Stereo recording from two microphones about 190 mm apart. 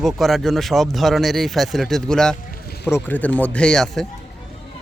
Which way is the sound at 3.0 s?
10° left (ahead or behind).